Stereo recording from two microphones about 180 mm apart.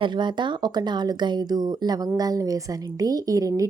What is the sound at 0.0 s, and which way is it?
A woman's voice, 25° right (ahead or behind).